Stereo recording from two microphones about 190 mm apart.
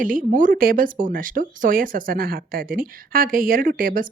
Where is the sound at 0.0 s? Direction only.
45° right (ahead or behind).